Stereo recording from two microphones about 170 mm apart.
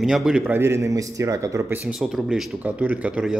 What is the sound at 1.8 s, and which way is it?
A man's voice, 5° right (ahead or behind).